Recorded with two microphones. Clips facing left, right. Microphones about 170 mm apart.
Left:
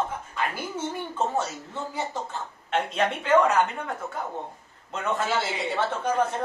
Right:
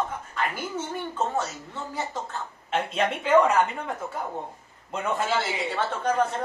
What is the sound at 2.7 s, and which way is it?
A woman's voice, 10° right (ahead or behind).